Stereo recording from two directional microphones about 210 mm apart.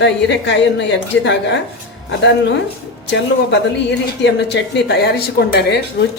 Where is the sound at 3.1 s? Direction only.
55° left (ahead or behind).